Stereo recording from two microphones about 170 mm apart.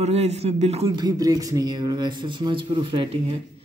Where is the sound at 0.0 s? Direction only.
40° right (ahead or behind).